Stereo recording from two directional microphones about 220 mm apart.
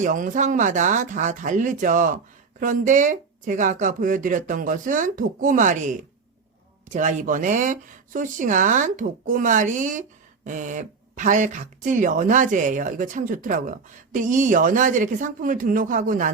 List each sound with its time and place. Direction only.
0.0 s speech: 35° right (ahead or behind)
6.9 s speech: 35° right (ahead or behind)